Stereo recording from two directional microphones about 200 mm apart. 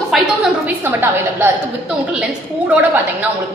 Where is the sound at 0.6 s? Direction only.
10° right (ahead or behind).